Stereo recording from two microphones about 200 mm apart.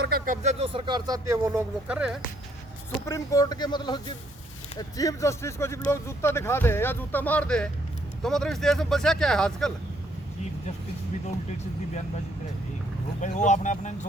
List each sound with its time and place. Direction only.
0.0 s a sound: 50° right (ahead or behind)
0.4 s speech: 25° right (ahead or behind); by 2.2 s 5° right (ahead or behind)
3.1 s speech: 20° left (ahead or behind); by 9.7 s centre (ahead or behind)
13.2 s speech: 35° left (ahead or behind)